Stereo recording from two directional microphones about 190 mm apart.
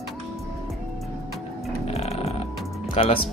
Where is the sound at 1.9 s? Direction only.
35° left (ahead or behind).